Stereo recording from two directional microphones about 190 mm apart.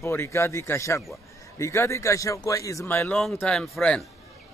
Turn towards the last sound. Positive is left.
turn(degrees=0)  # may be behind; listen again after turning